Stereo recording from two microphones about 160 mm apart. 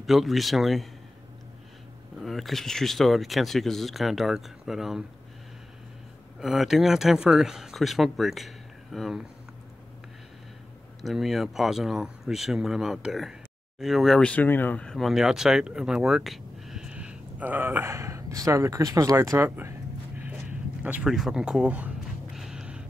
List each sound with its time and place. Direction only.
0.0 s speech: centre (ahead or behind)
2.2 s speech: centre (ahead or behind)
6.4 s speech: centre (ahead or behind)
11.0 s speech: centre (ahead or behind)
20.2 s a sound: 10° right (ahead or behind)